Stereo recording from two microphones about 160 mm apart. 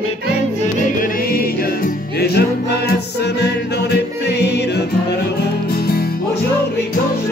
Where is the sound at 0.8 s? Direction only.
60° left (ahead or behind); by 4.8 s 90° left.